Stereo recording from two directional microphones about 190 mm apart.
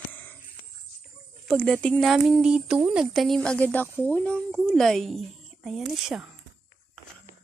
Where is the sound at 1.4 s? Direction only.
5° left (ahead or behind).